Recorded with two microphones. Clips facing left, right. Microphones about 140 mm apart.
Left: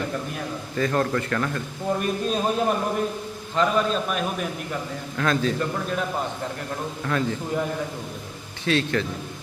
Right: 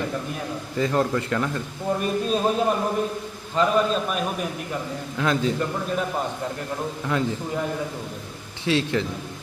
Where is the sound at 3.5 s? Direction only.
Centre (ahead or behind).